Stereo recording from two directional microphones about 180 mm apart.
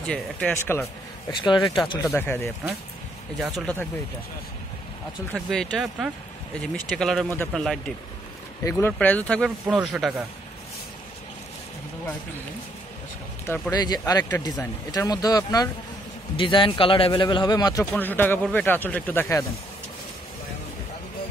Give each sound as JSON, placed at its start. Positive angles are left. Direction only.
{"t": 0.1, "sound": "speech", "side_deg": 10}
{"t": 1.4, "sound": "speech", "side_deg": 25}
{"t": 2.1, "sound": "speech", "side_deg": 10}
{"t": 3.3, "sound": "speech", "side_deg": 0}
{"t": 5.3, "sound": "speech", "side_deg": 5}
{"t": 9.7, "sound": "speech", "side_deg": -5}
{"t": 13.5, "sound": "speech", "side_deg": 20}
{"t": 17.9, "sound": "speech", "side_deg": 10}